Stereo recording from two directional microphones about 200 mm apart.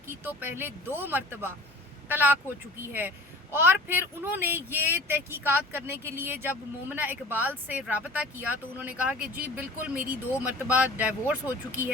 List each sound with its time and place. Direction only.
0.1 s speech: 10° right (ahead or behind)